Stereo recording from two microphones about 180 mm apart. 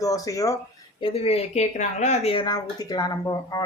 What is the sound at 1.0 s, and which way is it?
Speech, 30° left (ahead or behind).